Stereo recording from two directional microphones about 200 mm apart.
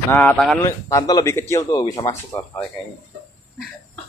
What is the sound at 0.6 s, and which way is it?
Speech, 15° left (ahead or behind).